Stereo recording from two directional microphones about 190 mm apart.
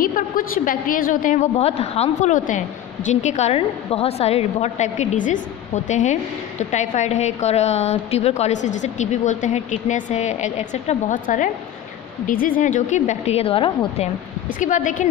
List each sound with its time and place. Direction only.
0.0 s a woman's voice: 45° left (ahead or behind); by 14.0 s 30° left (ahead or behind)
14.6 s a woman's voice: 40° left (ahead or behind)